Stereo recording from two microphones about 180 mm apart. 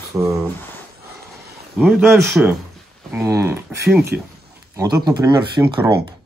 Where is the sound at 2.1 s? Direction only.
15° right (ahead or behind).